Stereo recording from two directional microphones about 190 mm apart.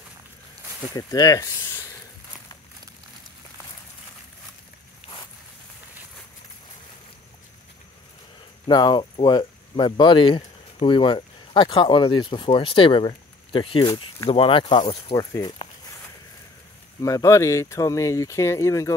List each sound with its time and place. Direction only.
0.9 s speech: 20° left (ahead or behind)
8.6 s speech: 25° left (ahead or behind)
17.0 s speech: 15° left (ahead or behind)